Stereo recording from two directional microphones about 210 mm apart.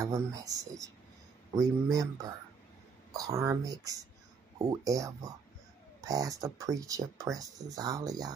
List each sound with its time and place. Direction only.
0.1 s speech: 15° right (ahead or behind)